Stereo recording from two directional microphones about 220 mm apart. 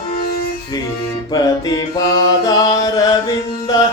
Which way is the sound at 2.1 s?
15° left (ahead or behind).